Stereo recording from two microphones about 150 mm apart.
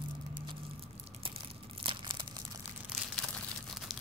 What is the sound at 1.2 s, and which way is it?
Crumpling, 40° right (ahead or behind).